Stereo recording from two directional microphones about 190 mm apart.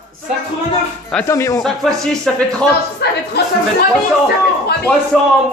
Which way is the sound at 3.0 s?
55° left (ahead or behind).